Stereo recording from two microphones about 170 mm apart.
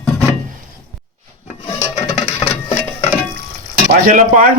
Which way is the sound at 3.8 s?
55° right (ahead or behind).